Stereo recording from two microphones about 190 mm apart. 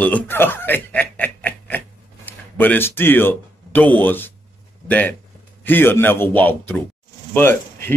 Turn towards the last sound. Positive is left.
turn(degrees=10)  # may be behind; listen again after turning